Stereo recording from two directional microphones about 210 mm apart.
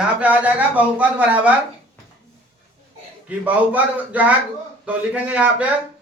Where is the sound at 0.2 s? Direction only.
5° right (ahead or behind).